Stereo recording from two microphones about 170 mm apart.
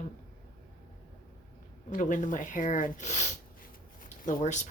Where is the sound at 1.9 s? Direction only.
50° left (ahead or behind).